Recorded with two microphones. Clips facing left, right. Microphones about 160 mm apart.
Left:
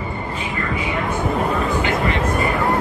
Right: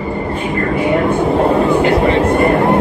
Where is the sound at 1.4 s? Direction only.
35° right (ahead or behind).